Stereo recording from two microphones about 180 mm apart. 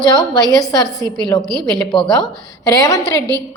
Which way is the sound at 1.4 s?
25° right (ahead or behind).